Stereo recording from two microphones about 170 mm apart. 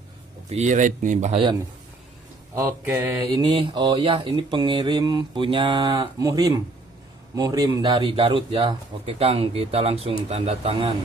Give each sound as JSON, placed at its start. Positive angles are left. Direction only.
{"t": 0.5, "sound": "speech", "side_deg": -45}
{"t": 2.5, "sound": "mantra", "side_deg": -10}
{"t": 3.3, "sound": "speech", "side_deg": -30}